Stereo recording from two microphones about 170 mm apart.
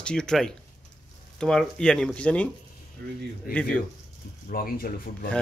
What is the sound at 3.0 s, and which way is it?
Speech, 90° right.